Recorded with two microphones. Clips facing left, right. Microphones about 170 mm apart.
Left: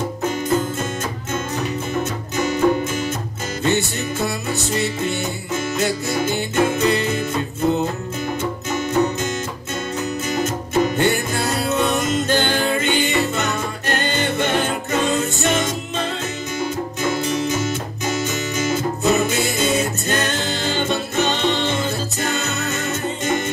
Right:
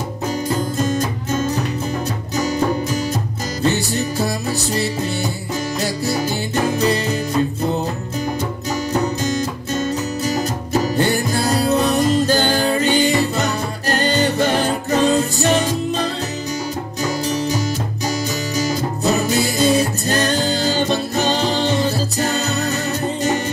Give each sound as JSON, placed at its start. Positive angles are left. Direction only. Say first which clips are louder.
{"t": 0.7, "sound": "music", "louder": "right 5 dB", "side_deg": -35}
{"t": 10.2, "sound": "music", "louder": "right 1 dB", "side_deg": -35}